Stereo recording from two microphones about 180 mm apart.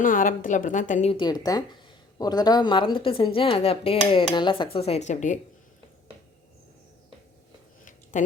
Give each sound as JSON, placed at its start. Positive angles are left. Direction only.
{"t": 0.0, "sound": "a woman's voice", "side_deg": 50}
{"t": 1.1, "sound": "a woman's voice", "side_deg": 25}
{"t": 8.1, "sound": "a woman's voice", "side_deg": 45}